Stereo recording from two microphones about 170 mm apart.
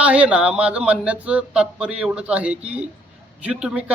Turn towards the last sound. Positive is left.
turn(degrees=-5)  # may be behind; listen again after turning